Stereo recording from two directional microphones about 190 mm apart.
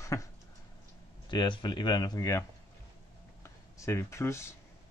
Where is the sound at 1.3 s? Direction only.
25° left (ahead or behind).